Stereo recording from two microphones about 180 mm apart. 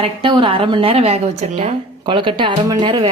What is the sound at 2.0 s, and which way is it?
A woman's voice, 25° right (ahead or behind).